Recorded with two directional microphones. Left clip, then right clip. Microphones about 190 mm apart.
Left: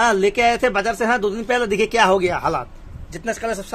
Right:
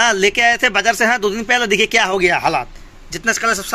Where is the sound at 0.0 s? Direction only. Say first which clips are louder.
Right 3 dB; centre (ahead or behind).